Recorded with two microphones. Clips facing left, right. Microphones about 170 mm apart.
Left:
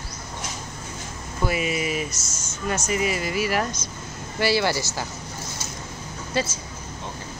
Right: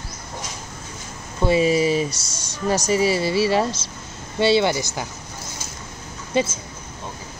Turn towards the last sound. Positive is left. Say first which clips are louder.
# right 5 dB
turn(degrees=-20)  # may be behind; listen again after turning